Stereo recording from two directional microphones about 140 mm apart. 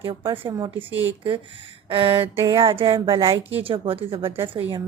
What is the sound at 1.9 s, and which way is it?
Speech, 40° right (ahead or behind).